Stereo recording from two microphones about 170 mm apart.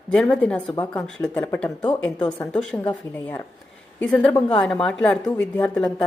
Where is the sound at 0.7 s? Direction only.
20° left (ahead or behind).